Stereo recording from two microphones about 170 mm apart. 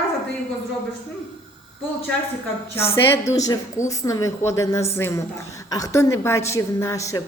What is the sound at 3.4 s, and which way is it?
A man's voice, 20° left (ahead or behind).